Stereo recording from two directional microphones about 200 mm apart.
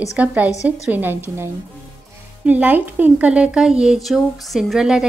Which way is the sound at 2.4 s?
5° right (ahead or behind).